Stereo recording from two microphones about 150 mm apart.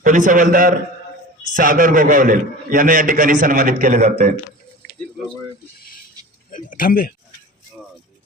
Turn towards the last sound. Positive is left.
turn(degrees=70)  # may be behind; listen again after turning